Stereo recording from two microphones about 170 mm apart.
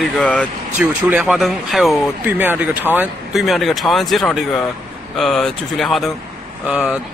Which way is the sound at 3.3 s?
Centre (ahead or behind).